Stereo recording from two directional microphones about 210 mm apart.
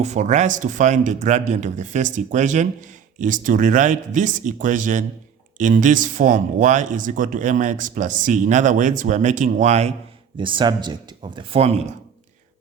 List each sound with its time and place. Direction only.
0.0 s speech: 35° right (ahead or behind)